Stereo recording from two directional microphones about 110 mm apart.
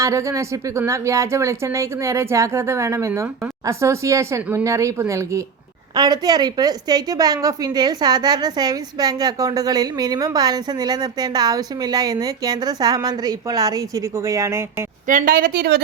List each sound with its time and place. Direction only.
0.0 s a woman's voice: 30° right (ahead or behind)